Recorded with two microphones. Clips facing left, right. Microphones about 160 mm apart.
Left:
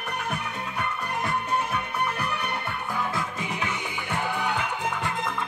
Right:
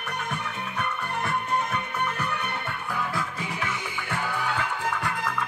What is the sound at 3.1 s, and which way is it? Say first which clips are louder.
Music: left 1 dB; 20° left (ahead or behind).